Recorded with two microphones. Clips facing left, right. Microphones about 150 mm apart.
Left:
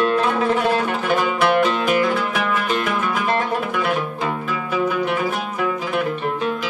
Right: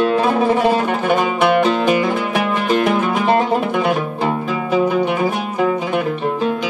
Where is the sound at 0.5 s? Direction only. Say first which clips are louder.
Right 4 dB; 25° right (ahead or behind).